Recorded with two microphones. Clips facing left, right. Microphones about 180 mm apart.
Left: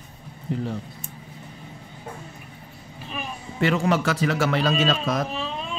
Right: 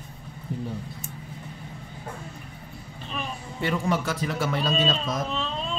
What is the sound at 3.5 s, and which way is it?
A man's voice, 90° left.